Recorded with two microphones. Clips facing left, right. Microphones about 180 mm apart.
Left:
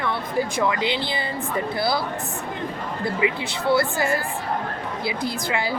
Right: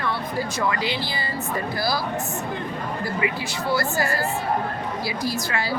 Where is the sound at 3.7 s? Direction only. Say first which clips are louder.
Left 3 dB; 20° left (ahead or behind).